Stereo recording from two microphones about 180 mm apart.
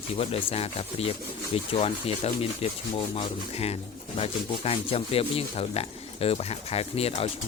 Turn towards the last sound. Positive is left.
turn(degrees=35)  # may be behind; listen again after turning